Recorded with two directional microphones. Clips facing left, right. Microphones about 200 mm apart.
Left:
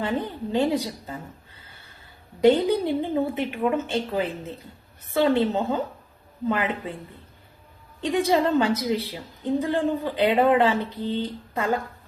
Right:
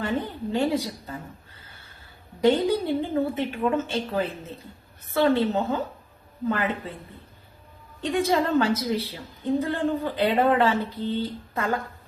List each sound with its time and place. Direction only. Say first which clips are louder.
0.0 s a woman's voice: left 1 dB; 15° left (ahead or behind)
2.4 s a woman's voice: left 2 dB; 15° left (ahead or behind)
8.1 s a woman's voice: left 1 dB; 15° left (ahead or behind)